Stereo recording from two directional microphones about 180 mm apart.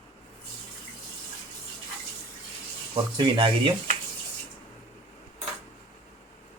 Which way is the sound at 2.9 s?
25° right (ahead or behind).